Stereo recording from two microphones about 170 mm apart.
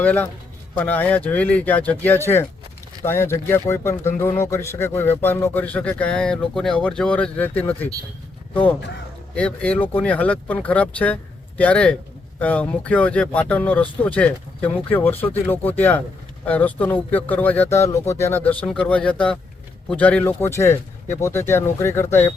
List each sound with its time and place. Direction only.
0.0 s speech: 10° left (ahead or behind)
9.3 s speech: 5° left (ahead or behind)